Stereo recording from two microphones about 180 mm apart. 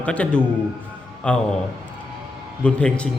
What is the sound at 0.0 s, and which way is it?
Speech, 5° left (ahead or behind).